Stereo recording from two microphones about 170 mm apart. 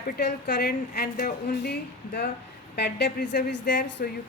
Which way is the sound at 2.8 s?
90° left.